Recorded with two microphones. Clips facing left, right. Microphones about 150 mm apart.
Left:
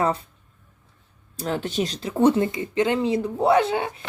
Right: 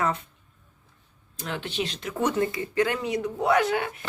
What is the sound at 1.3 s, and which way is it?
Speech, 35° left (ahead or behind).